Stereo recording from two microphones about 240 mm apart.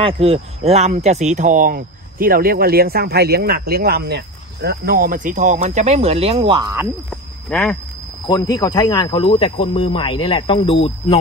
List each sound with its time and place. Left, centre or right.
0.0 s speech: right
7.1 s cricket: centre
8.3 s speech: centre